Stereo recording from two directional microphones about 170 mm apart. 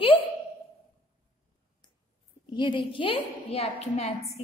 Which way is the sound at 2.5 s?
30° left (ahead or behind).